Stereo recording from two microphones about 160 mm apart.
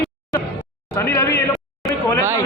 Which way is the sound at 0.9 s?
15° left (ahead or behind).